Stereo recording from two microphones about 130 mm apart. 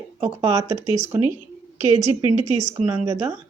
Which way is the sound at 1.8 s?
55° right (ahead or behind).